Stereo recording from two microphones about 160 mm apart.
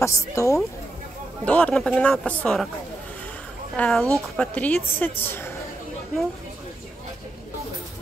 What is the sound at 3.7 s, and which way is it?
Speech, 5° left (ahead or behind).